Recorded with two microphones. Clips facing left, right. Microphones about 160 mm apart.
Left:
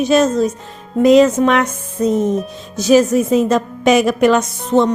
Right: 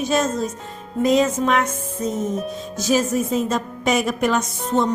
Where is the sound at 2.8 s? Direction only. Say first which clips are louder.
Left 8 dB; 70° left (ahead or behind).